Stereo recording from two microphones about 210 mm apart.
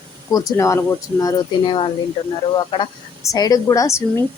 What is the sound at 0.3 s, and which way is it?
A woman's voice, 15° left (ahead or behind).